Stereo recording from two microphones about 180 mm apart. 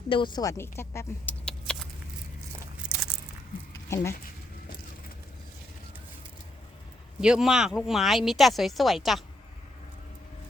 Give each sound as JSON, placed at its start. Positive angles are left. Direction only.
{"t": 0.1, "sound": "speech", "side_deg": 25}
{"t": 2.8, "sound": "a sound", "side_deg": -5}
{"t": 3.8, "sound": "speech", "side_deg": 15}
{"t": 7.2, "sound": "speech", "side_deg": -5}